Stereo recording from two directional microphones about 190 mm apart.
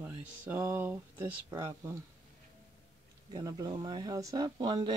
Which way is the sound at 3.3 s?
20° right (ahead or behind).